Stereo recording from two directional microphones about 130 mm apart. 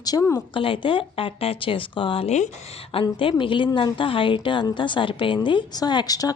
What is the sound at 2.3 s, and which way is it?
Speech, 65° left (ahead or behind).